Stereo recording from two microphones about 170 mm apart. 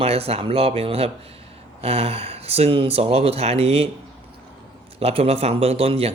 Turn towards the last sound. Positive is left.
turn(degrees=-35)  # may be behind; listen again after turning